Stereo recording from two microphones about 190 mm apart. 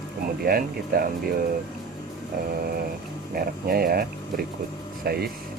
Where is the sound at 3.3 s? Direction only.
50° right (ahead or behind).